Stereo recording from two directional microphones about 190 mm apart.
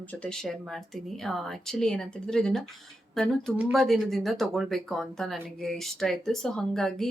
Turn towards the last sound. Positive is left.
turn(degrees=0)  # may be behind; listen again after turning